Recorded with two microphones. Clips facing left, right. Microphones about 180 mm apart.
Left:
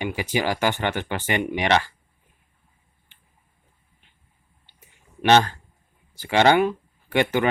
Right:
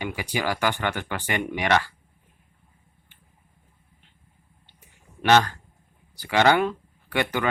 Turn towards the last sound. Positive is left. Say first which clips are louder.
# left 4 dB
turn(degrees=25)  # may be behind; listen again after turning